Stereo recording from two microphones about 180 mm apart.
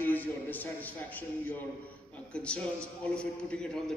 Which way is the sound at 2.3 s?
5° left (ahead or behind).